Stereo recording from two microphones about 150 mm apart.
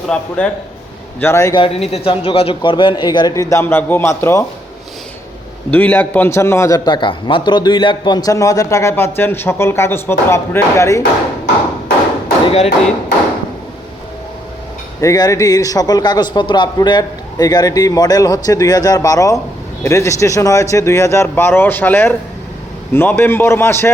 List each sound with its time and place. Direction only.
0.1 s a man's voice: 10° left (ahead or behind)
1.5 s a man's voice: 40° left (ahead or behind); by 4.4 s 20° left (ahead or behind)
5.7 s a man's voice: 10° left (ahead or behind)
12.5 s speech: 45° left (ahead or behind)
15.0 s a man's voice: 20° left (ahead or behind)